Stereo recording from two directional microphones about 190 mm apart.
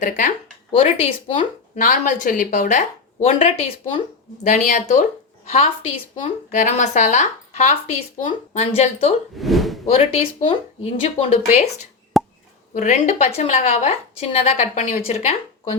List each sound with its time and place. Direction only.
0.0 s speech: 45° left (ahead or behind)
0.8 s a woman's voice: 30° left (ahead or behind)
9.4 s a sound: centre (ahead or behind)
9.8 s a woman's voice: 30° left (ahead or behind)
12.1 s plop: centre (ahead or behind)
12.7 s a woman's voice: 40° left (ahead or behind)